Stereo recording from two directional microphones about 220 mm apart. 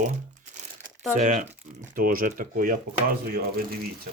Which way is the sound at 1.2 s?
30° right (ahead or behind).